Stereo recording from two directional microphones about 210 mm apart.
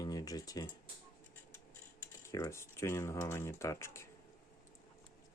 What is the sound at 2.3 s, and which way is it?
Speech, 15° left (ahead or behind).